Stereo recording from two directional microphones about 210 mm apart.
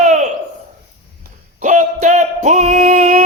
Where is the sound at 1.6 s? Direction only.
35° right (ahead or behind).